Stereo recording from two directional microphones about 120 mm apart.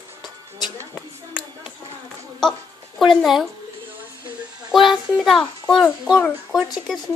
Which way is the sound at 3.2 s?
Centre (ahead or behind).